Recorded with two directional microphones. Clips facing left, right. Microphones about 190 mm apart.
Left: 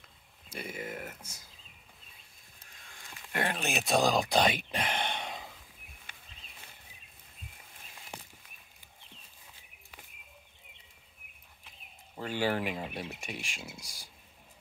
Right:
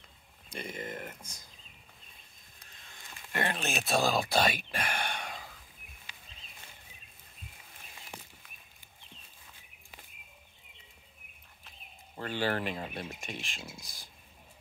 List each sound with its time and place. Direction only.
0.5 s speech: 5° left (ahead or behind)
2.9 s a sound: 10° left (ahead or behind)
3.8 s speech: 15° left (ahead or behind)
12.2 s speech: 10° left (ahead or behind)